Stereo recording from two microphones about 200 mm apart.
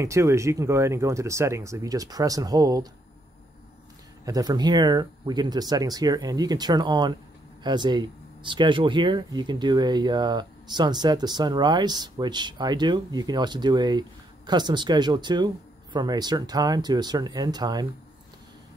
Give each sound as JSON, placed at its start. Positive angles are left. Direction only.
{"t": 0.0, "sound": "speech", "side_deg": -15}
{"t": 4.3, "sound": "speech", "side_deg": -20}